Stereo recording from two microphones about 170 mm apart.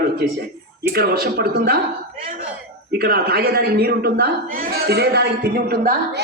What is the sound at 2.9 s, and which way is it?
A man's voice, 65° right (ahead or behind).